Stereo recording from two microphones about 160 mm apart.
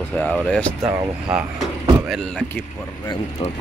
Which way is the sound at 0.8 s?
5° right (ahead or behind).